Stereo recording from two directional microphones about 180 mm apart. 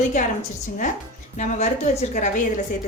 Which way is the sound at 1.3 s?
40° left (ahead or behind).